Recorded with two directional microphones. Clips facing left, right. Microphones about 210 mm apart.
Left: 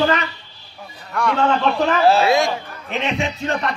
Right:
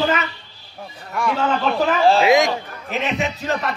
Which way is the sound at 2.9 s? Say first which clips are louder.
Even; 5° right (ahead or behind).